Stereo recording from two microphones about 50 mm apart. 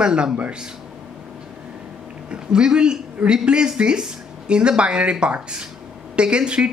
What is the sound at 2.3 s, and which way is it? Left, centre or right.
Speech, centre.